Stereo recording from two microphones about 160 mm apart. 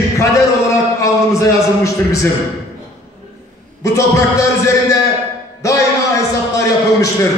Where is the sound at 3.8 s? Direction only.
20° left (ahead or behind).